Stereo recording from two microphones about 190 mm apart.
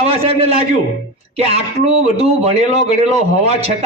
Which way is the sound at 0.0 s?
30° right (ahead or behind).